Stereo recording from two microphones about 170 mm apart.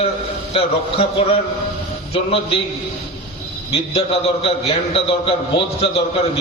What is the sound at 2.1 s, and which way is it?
Speech, 35° left (ahead or behind).